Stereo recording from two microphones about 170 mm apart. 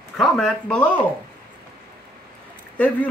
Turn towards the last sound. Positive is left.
turn(degrees=10)  # may be behind; listen again after turning